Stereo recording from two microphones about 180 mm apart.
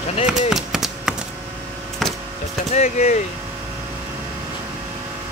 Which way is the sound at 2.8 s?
40° left (ahead or behind).